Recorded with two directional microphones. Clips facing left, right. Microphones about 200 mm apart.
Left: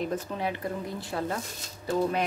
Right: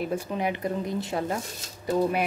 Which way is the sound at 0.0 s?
10° right (ahead or behind).